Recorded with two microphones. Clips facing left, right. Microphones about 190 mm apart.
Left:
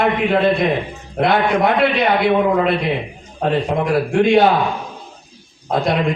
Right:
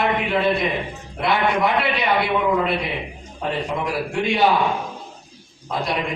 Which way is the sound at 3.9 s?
55° left (ahead or behind).